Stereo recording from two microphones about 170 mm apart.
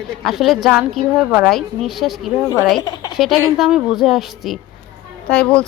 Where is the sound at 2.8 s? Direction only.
20° left (ahead or behind).